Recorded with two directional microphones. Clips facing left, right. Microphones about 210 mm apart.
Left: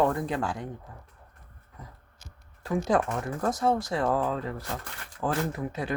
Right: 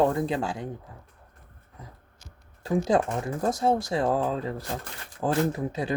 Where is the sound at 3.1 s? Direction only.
15° right (ahead or behind).